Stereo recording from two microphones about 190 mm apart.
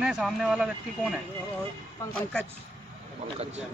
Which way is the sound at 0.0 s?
5° right (ahead or behind).